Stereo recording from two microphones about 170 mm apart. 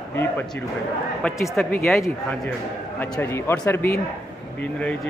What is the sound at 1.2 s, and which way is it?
Speech, 5° left (ahead or behind).